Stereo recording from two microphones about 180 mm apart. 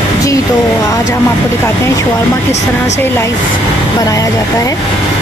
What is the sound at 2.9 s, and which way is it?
Speech, 15° left (ahead or behind).